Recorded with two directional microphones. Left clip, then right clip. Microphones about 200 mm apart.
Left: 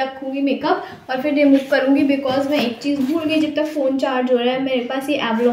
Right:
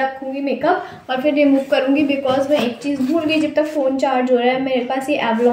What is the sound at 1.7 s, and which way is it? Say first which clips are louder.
Speech: even; 55° left (ahead or behind).